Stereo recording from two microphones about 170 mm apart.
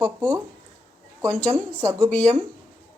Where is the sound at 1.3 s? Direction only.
10° left (ahead or behind).